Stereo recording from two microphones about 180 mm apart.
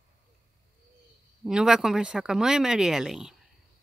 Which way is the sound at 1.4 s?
5° right (ahead or behind).